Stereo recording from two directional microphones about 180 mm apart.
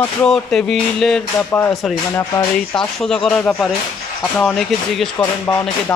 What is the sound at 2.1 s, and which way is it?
Speech, 25° left (ahead or behind).